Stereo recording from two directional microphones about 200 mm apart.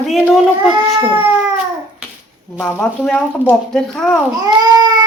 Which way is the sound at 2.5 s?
5° left (ahead or behind).